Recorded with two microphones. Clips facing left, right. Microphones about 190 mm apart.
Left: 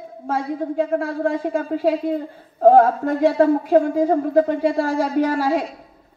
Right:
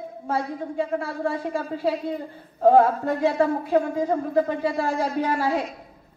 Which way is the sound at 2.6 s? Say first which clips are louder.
Left 4 dB; 45° left (ahead or behind).